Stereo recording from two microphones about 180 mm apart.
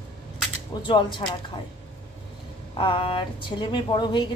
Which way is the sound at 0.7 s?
25° left (ahead or behind).